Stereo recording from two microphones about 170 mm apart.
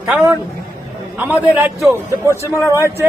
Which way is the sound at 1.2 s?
10° right (ahead or behind).